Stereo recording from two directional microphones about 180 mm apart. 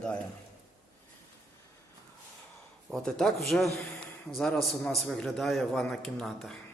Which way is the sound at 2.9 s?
5° left (ahead or behind).